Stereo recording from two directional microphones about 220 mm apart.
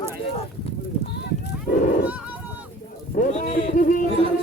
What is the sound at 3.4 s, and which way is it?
Speech, 35° left (ahead or behind).